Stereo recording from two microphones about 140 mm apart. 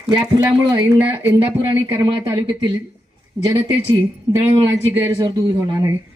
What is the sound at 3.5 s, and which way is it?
Speech, 20° right (ahead or behind).